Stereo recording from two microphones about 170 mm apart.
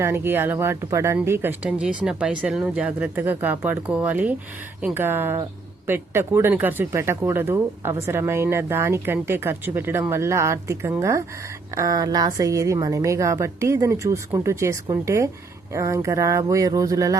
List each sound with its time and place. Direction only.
0.0 s speech: 15° right (ahead or behind)